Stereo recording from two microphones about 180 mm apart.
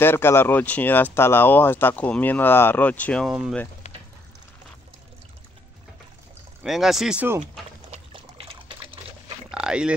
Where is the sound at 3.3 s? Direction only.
5° right (ahead or behind).